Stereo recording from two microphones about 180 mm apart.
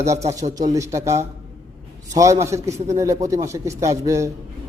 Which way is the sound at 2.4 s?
15° right (ahead or behind).